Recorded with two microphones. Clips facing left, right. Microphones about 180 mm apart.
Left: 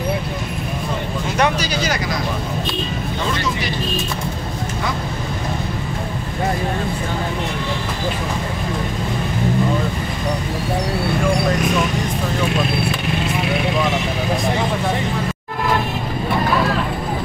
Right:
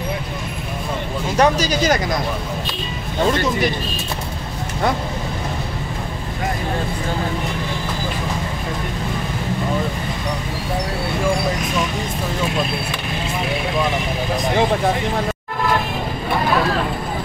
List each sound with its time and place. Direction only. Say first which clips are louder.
1.4 s speech: right 3 dB; 40° right (ahead or behind)